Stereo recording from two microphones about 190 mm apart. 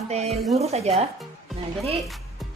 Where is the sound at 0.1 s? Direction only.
35° right (ahead or behind).